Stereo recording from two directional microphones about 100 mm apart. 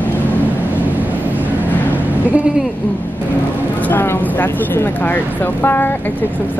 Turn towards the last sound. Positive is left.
turn(degrees=20)  # may be behind; listen again after turning